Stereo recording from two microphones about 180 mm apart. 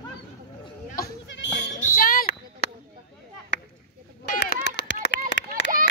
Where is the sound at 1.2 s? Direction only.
85° left.